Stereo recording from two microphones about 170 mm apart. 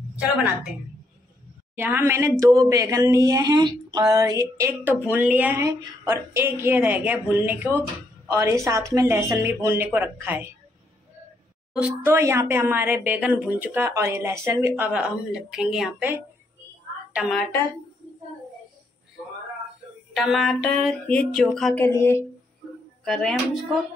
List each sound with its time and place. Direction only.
1.8 s speech: 10° right (ahead or behind)
11.7 s speech: 10° right (ahead or behind)
14.9 s speech: 5° right (ahead or behind)
17.1 s a woman's voice: 5° right (ahead or behind)
20.2 s speech: centre (ahead or behind)
21.8 s speech: 15° left (ahead or behind)
23.0 s speech: centre (ahead or behind)